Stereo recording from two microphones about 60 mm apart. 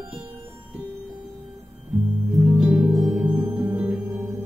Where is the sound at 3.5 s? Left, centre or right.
Right.